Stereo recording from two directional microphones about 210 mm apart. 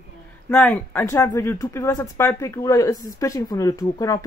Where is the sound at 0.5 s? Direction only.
5° left (ahead or behind).